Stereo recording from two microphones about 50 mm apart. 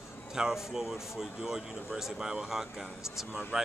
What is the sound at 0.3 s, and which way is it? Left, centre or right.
Speech, centre.